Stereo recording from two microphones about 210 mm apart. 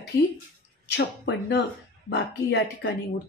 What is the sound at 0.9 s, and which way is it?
Speech, 55° left (ahead or behind).